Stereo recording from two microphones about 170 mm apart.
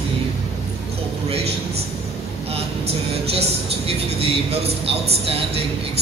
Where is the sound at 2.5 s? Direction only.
35° right (ahead or behind).